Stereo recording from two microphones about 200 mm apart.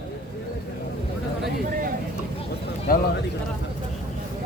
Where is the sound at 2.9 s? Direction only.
45° left (ahead or behind).